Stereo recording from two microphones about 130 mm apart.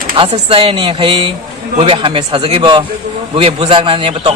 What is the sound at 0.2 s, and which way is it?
A man's voice, 40° right (ahead or behind).